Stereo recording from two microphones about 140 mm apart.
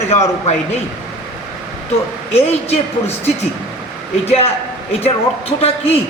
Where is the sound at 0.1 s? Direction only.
50° left (ahead or behind).